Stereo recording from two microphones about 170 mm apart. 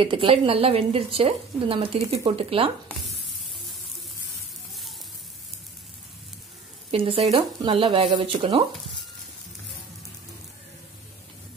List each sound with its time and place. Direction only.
0.0 s speech: 30° right (ahead or behind)
6.9 s speech: 35° right (ahead or behind)